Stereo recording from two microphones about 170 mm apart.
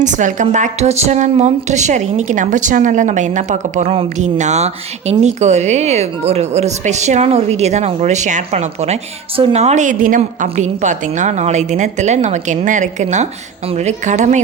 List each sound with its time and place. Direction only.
0.0 s speech: 45° right (ahead or behind)